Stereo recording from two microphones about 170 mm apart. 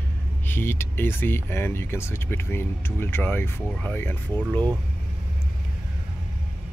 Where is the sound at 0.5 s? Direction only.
15° left (ahead or behind).